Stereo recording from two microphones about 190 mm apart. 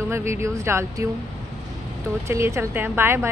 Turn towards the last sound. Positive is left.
turn(degrees=-10)  # may be behind; listen again after turning